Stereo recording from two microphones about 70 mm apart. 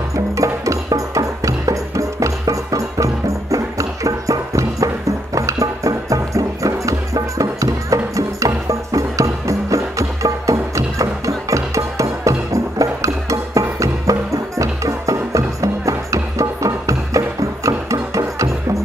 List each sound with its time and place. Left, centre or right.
0.1 s music: right